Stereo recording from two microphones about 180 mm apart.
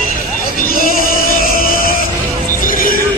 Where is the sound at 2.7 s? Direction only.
50° left (ahead or behind).